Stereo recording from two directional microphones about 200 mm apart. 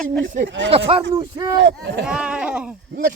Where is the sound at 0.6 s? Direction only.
30° right (ahead or behind).